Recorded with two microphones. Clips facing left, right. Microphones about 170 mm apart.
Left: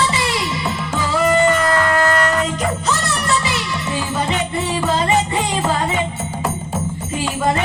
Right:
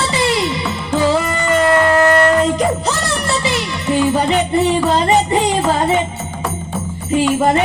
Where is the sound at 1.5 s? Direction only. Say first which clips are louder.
Right 5 dB; 25° right (ahead or behind).